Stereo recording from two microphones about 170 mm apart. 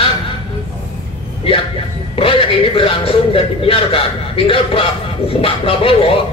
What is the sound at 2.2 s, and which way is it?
A man's voice, 30° left (ahead or behind).